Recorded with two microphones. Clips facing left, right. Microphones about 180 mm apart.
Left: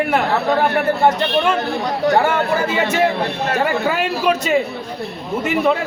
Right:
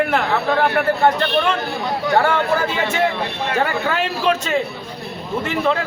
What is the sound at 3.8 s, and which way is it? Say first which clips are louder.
Speech: left 2 dB; 10° left (ahead or behind).